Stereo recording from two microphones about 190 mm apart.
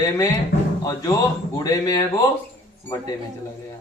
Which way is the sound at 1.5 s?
20° left (ahead or behind).